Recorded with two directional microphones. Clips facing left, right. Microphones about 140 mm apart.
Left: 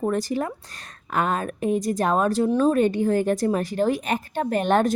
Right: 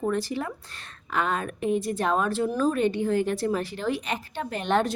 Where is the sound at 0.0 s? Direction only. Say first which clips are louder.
Left 3 dB; 40° left (ahead or behind).